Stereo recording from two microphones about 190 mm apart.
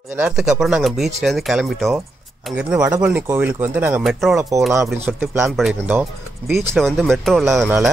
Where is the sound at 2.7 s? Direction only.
20° right (ahead or behind).